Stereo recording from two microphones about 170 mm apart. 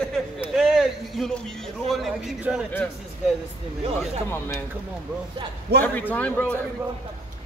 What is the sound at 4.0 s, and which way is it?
Speech, 15° left (ahead or behind).